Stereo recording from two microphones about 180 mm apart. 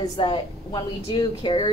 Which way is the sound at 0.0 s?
25° left (ahead or behind).